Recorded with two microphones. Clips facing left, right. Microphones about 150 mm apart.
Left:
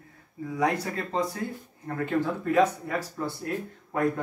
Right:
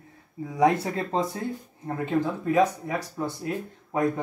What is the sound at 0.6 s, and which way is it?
Speech, 20° right (ahead or behind).